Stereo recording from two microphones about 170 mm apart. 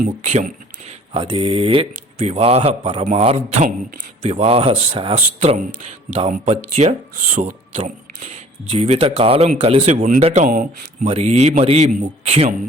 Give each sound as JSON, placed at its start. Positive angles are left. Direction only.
{"t": 0.0, "sound": "speech", "side_deg": -45}
{"t": 11.1, "sound": "speech", "side_deg": -40}